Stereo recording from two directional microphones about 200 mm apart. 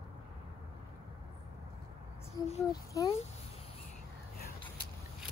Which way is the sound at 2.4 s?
20° left (ahead or behind).